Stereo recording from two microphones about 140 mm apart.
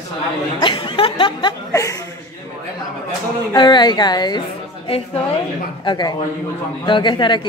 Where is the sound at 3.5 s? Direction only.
30° left (ahead or behind).